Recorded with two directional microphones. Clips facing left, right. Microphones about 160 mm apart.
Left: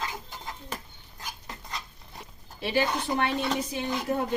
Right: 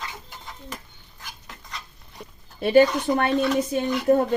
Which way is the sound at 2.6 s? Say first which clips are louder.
Right 10 dB; 50° right (ahead or behind).